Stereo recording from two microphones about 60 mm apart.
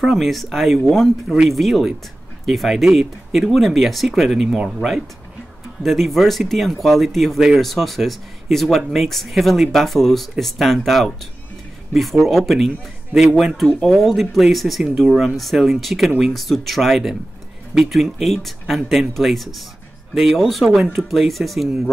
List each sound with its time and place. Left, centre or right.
0.1 s speech: centre
1.3 s speech: centre
13.7 s speech: centre
13.9 s speech: centre